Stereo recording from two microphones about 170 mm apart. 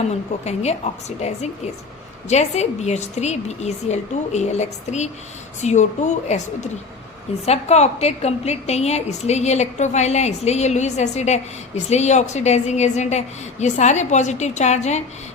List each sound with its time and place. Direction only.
0.0 s a woman's voice: 40° left (ahead or behind)